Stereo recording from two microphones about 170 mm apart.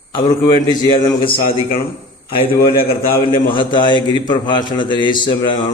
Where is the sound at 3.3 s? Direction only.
30° left (ahead or behind).